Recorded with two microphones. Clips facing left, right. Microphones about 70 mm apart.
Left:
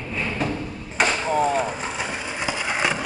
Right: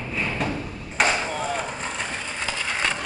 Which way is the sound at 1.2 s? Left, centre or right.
Left.